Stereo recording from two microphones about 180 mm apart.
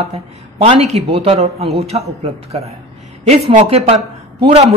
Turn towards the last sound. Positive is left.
turn(degrees=-35)  # may be behind; listen again after turning